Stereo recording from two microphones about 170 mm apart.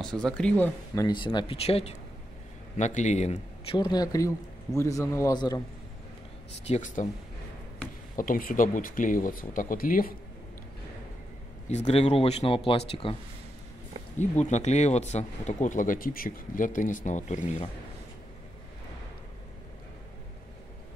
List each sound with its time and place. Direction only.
0.0 s speech: 5° left (ahead or behind)
0.9 s speech: 25° left (ahead or behind); by 3.7 s 40° left (ahead or behind)
3.7 s a man's voice: 25° left (ahead or behind)
6.7 s speech: 45° left (ahead or behind)
8.2 s speech: 55° left (ahead or behind)
11.6 s speech: 40° left (ahead or behind)
14.4 s speech: 40° left (ahead or behind)